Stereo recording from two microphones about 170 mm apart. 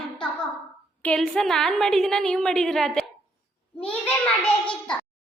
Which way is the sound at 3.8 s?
10° left (ahead or behind).